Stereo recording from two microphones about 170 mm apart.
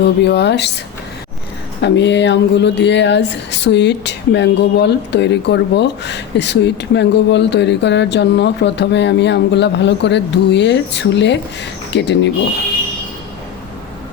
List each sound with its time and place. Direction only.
0.0 s speech: 80° left
1.8 s speech: 90° left